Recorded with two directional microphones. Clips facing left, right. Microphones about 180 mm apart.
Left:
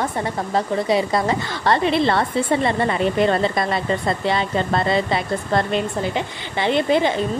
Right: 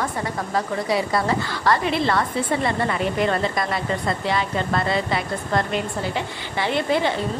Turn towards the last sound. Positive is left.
turn(degrees=20)  # may be behind; listen again after turning